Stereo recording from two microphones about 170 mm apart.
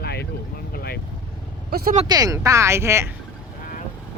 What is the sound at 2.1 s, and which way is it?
Speech, 20° right (ahead or behind).